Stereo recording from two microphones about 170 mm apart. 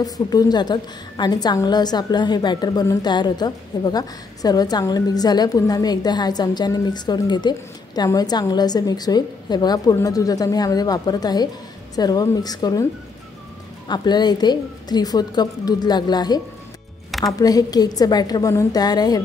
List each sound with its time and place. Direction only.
0.0 s a woman's voice: 20° left (ahead or behind)
13.8 s a woman's voice: 25° left (ahead or behind)